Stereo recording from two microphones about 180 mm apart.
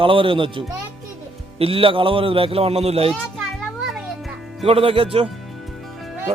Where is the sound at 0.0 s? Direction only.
30° right (ahead or behind).